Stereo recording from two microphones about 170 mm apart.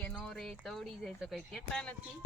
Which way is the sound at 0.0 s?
5° left (ahead or behind).